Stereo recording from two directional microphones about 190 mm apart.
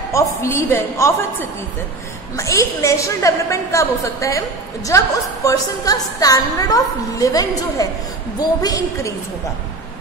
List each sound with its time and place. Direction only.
0.1 s a woman's voice: 15° left (ahead or behind)
2.3 s a woman's voice: 15° left (ahead or behind)